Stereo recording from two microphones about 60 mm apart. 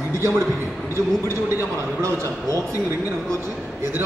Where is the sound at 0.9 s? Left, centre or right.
Left.